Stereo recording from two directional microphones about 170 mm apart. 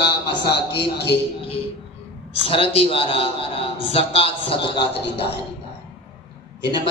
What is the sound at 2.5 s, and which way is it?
A man's voice, 35° left (ahead or behind).